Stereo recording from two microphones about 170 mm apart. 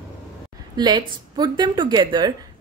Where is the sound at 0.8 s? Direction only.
25° right (ahead or behind).